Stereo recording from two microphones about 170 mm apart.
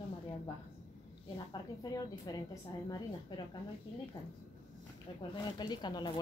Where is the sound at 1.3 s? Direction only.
20° left (ahead or behind).